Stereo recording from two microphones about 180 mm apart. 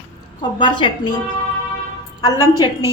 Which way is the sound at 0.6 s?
25° left (ahead or behind).